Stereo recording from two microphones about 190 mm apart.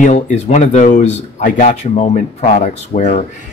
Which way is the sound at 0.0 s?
40° left (ahead or behind).